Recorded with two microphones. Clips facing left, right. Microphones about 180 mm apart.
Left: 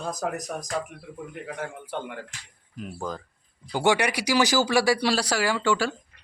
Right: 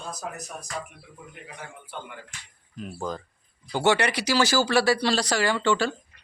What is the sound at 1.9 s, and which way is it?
Speech, 75° left (ahead or behind).